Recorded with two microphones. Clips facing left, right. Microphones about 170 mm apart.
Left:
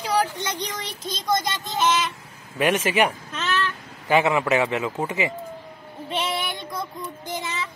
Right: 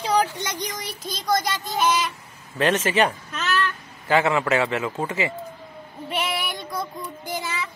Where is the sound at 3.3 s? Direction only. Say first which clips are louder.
Right 1 dB; 30° left (ahead or behind).